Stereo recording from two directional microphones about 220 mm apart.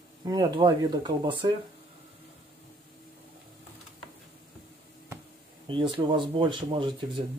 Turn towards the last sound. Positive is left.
turn(degrees=-25)  # may be behind; listen again after turning